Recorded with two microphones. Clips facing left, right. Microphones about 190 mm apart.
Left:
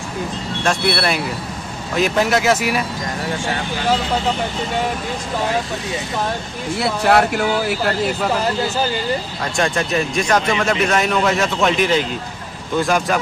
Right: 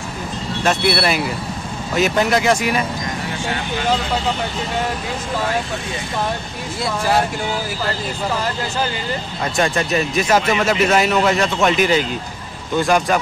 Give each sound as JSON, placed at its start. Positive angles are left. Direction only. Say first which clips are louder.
{"t": 0.7, "sound": "speech", "louder": "right 1 dB", "side_deg": -5}
{"t": 6.8, "sound": "speech", "louder": "left 3 dB", "side_deg": 65}
{"t": 9.6, "sound": "speech", "louder": "even", "side_deg": 0}